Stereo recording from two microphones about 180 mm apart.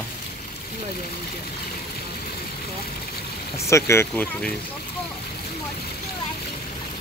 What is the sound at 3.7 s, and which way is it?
Speech, 15° left (ahead or behind).